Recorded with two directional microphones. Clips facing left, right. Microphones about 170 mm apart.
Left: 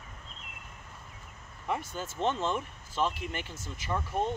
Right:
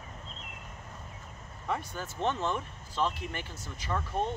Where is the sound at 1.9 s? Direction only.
20° left (ahead or behind).